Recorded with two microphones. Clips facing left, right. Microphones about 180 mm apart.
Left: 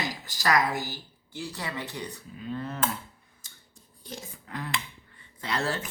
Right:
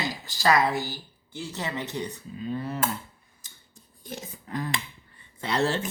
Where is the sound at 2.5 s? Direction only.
10° right (ahead or behind).